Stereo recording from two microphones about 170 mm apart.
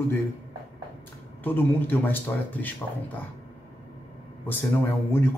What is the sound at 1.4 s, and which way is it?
Speech, 10° left (ahead or behind).